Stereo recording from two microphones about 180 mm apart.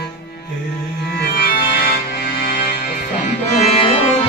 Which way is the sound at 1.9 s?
55° left (ahead or behind).